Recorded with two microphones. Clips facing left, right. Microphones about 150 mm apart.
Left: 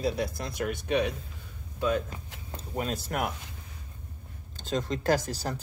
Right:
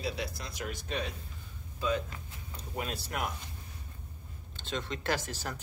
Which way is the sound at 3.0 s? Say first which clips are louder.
Left 5 dB; 50° left (ahead or behind).